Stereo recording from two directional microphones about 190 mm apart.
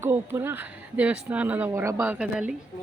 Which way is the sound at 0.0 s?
15° right (ahead or behind).